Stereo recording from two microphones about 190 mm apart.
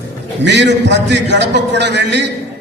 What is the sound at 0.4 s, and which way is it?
A man's voice, 65° right (ahead or behind).